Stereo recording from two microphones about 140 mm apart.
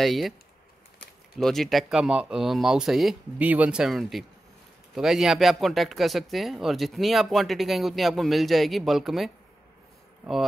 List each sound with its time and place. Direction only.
0.0 s speech: centre (ahead or behind)
1.4 s speech: centre (ahead or behind)